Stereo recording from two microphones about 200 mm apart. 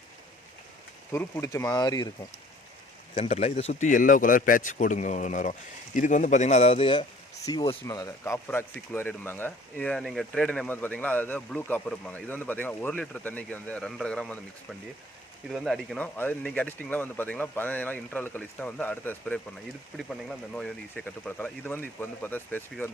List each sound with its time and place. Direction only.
1.1 s speech: 15° left (ahead or behind)
3.2 s a man's voice: 30° left (ahead or behind); by 22.9 s 10° left (ahead or behind)